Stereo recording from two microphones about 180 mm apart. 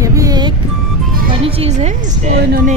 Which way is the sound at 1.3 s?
35° right (ahead or behind).